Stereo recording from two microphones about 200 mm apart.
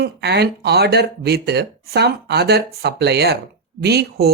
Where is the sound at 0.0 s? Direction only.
55° right (ahead or behind).